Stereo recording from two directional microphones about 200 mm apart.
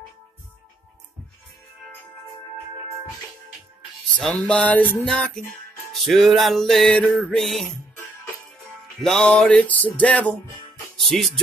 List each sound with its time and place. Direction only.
4.2 s music: 5° left (ahead or behind)
8.6 s music: centre (ahead or behind)